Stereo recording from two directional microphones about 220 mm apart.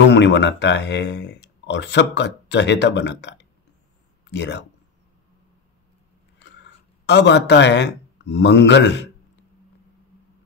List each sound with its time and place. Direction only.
0.0 s speech: 50° left (ahead or behind)
6.4 s speech: 50° left (ahead or behind)